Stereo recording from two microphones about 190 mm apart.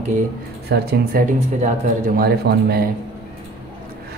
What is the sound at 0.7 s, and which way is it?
Speech, 55° right (ahead or behind).